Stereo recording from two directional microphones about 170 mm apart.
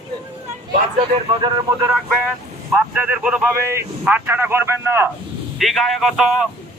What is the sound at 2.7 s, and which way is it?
A man's voice, 10° right (ahead or behind).